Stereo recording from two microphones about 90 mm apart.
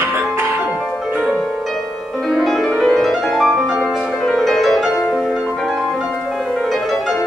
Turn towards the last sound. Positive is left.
turn(degrees=0)  # may be behind; listen again after turning